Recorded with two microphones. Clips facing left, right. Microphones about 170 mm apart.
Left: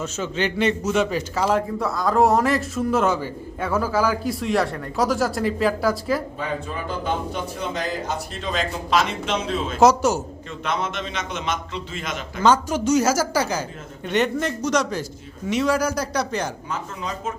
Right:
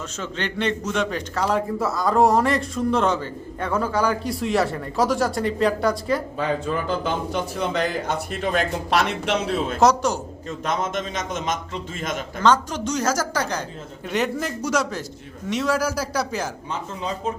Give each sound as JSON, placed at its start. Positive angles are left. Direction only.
{"t": 0.0, "sound": "a man's voice", "side_deg": 5}
{"t": 7.7, "sound": "speech", "side_deg": -60}
{"t": 9.7, "sound": "a man's voice", "side_deg": 0}
{"t": 10.7, "sound": "a man's voice", "side_deg": -45}
{"t": 12.4, "sound": "a woman's voice", "side_deg": 10}